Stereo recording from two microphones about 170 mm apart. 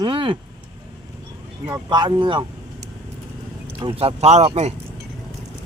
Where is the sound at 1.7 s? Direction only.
25° right (ahead or behind).